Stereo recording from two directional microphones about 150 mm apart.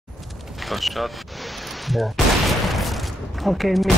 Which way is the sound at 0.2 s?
Centre (ahead or behind).